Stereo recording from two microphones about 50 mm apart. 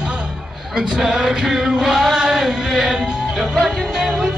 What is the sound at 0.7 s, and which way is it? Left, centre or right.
Music, centre.